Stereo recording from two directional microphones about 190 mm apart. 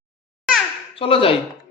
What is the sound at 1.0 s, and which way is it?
Speech, 30° left (ahead or behind).